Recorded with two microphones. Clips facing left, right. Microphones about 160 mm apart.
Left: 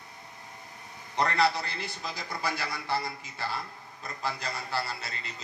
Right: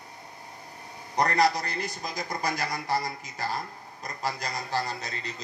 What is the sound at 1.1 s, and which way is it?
A man's voice, 40° right (ahead or behind).